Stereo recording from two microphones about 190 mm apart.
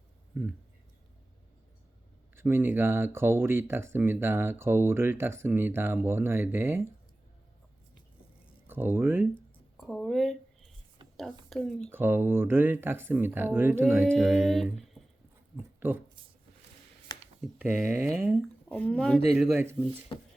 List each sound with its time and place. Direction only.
0.3 s speech: 5° right (ahead or behind)
2.3 s speech: 10° right (ahead or behind)
8.6 s speech: 10° right (ahead or behind)
9.7 s speech: centre (ahead or behind)
11.9 s speech: 10° right (ahead or behind)
17.4 s speech: 10° right (ahead or behind)
18.7 s speech: 5° left (ahead or behind)
19.4 s speech: 10° right (ahead or behind)